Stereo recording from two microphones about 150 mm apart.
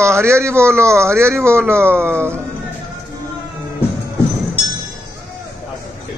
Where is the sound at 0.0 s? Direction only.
15° right (ahead or behind).